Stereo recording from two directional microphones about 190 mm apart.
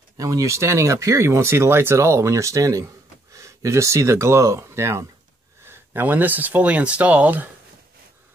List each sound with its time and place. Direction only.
0.2 s speech: 15° right (ahead or behind)